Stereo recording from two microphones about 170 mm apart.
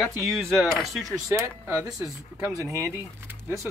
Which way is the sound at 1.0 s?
15° right (ahead or behind).